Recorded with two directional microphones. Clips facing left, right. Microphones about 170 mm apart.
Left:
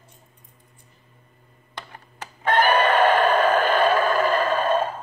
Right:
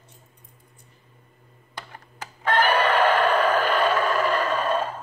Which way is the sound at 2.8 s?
50° left (ahead or behind).